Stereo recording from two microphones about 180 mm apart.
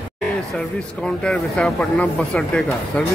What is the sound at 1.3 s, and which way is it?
Speech, 5° left (ahead or behind).